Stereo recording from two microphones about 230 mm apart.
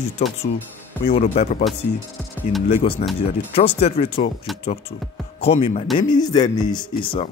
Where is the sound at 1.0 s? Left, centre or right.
Left.